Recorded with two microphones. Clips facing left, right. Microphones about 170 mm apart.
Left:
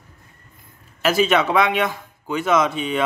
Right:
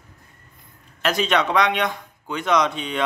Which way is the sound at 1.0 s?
5° left (ahead or behind).